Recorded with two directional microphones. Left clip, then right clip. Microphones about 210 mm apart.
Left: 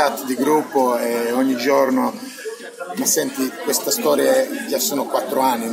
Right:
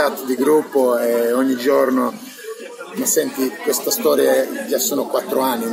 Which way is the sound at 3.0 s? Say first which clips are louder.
Right 2 dB; centre (ahead or behind).